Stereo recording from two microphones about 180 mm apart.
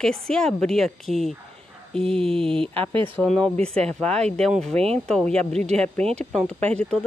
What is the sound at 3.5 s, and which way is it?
Speech, 35° right (ahead or behind).